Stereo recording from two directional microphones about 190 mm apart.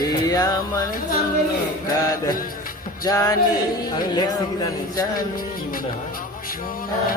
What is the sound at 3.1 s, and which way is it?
Music, 20° left (ahead or behind).